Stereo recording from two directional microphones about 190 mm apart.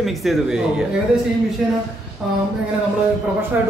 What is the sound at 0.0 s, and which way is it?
Speech, centre (ahead or behind).